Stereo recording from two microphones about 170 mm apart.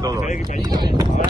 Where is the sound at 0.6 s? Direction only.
25° right (ahead or behind).